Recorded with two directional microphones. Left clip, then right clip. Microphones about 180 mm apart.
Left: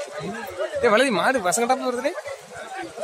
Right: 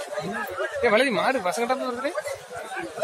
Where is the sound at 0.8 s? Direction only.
45° left (ahead or behind).